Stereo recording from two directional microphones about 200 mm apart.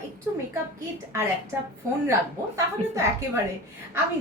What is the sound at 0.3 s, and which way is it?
Speech, 10° right (ahead or behind).